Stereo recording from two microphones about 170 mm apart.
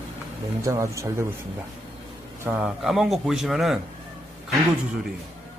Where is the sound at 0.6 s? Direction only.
20° right (ahead or behind).